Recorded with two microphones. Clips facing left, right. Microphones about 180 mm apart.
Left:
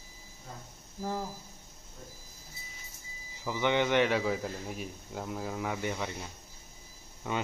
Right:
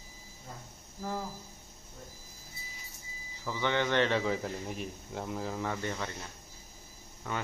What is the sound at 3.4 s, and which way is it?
A man's voice, 15° left (ahead or behind).